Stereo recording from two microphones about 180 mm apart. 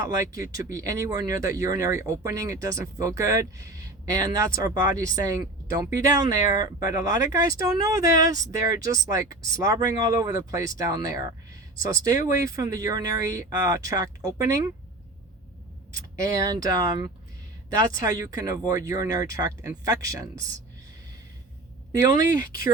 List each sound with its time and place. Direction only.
0.0 s speech: 15° right (ahead or behind)
16.4 s speech: 20° right (ahead or behind)